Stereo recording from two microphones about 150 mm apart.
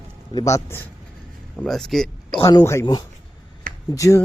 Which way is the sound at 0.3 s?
20° left (ahead or behind).